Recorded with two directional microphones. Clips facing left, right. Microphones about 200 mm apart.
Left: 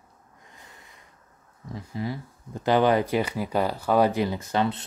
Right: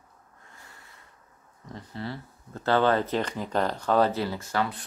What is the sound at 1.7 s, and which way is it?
Speech, 10° left (ahead or behind).